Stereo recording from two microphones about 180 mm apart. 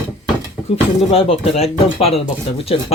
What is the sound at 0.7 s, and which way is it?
Speech, 30° left (ahead or behind).